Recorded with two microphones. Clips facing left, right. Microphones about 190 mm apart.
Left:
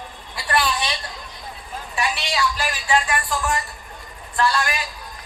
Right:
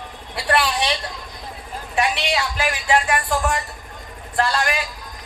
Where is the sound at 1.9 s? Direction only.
60° right (ahead or behind).